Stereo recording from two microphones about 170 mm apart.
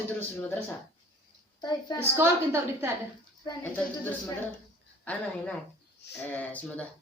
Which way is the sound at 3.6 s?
10° left (ahead or behind).